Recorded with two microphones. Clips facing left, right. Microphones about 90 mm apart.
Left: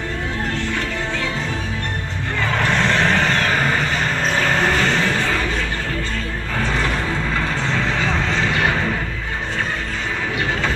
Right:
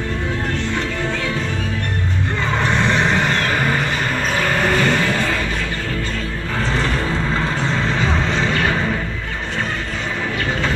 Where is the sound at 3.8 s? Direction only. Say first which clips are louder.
Even; 10° right (ahead or behind).